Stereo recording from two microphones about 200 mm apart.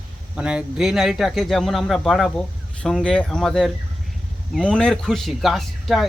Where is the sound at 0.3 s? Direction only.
5° right (ahead or behind).